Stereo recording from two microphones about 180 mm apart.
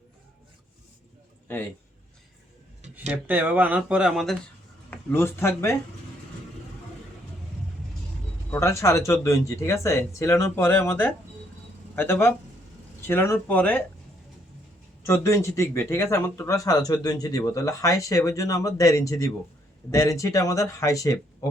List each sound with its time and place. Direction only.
3.1 s speech: 10° right (ahead or behind)
4.9 s speech: 10° left (ahead or behind)
8.4 s speech: 15° left (ahead or behind)
15.0 s speech: 15° left (ahead or behind)